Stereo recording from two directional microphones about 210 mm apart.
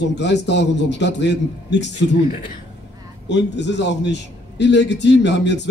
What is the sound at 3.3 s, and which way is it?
A man's voice, 55° left (ahead or behind).